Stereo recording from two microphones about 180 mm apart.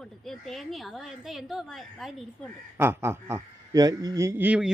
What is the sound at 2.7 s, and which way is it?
A man's voice, 10° right (ahead or behind).